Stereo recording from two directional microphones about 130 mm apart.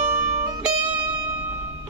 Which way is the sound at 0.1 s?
25° right (ahead or behind).